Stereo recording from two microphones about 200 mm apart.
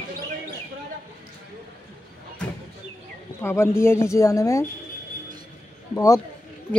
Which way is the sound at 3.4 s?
10° left (ahead or behind).